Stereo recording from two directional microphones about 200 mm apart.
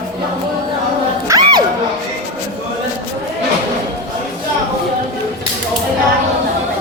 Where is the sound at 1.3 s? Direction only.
20° right (ahead or behind).